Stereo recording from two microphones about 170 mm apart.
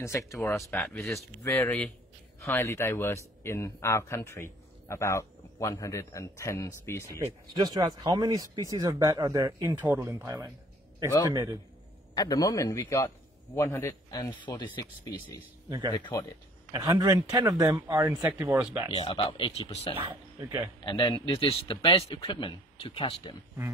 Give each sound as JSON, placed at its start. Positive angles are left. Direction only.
{"t": 0.3, "sound": "speech", "side_deg": 15}
{"t": 7.5, "sound": "speech", "side_deg": -25}
{"t": 12.1, "sound": "a man's voice", "side_deg": 25}
{"t": 15.9, "sound": "a man's voice", "side_deg": 20}
{"t": 16.7, "sound": "speech", "side_deg": -20}
{"t": 18.9, "sound": "speech", "side_deg": 30}
{"t": 20.0, "sound": "speech", "side_deg": -30}
{"t": 20.8, "sound": "speech", "side_deg": 25}